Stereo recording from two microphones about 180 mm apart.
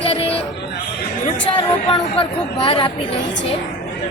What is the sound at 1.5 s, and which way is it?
A woman's voice, 30° left (ahead or behind).